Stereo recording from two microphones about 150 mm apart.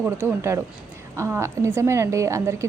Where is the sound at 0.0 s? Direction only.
10° right (ahead or behind).